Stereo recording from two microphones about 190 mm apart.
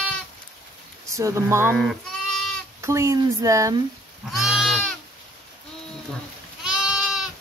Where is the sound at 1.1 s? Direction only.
15° right (ahead or behind).